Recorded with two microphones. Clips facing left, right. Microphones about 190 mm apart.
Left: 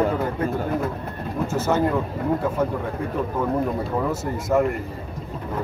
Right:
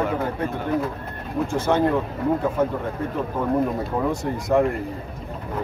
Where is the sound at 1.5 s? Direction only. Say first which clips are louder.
Right 1 dB; 5° left (ahead or behind).